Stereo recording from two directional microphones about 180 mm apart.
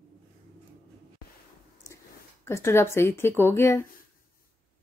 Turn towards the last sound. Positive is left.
turn(degrees=15)  # may be behind; listen again after turning